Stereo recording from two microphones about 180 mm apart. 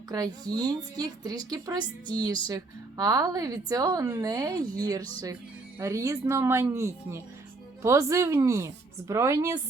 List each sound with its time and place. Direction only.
0.1 s a woman's voice: 20° right (ahead or behind)